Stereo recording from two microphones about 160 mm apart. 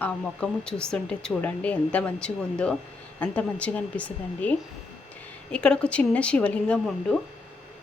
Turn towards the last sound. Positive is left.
turn(degrees=5)  # may be behind; listen again after turning